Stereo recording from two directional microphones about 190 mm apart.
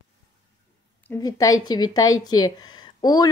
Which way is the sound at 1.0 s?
20° left (ahead or behind).